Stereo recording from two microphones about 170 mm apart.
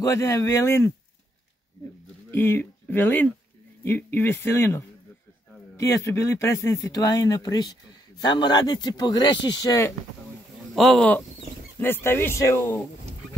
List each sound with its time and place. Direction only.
0.0 s speech: 20° left (ahead or behind)
2.3 s speech: 10° left (ahead or behind)
10.7 s speech: centre (ahead or behind)